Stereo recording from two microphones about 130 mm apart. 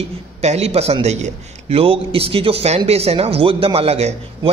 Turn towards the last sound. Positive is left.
turn(degrees=-50)  # may be behind; listen again after turning